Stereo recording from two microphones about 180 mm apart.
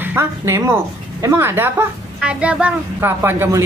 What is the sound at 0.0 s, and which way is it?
A woman's voice, 15° right (ahead or behind).